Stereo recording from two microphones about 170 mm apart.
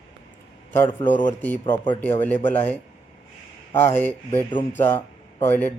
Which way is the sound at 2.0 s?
10° left (ahead or behind).